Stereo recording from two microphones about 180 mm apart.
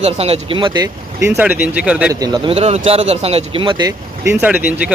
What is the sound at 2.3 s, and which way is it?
Speech, 30° right (ahead or behind).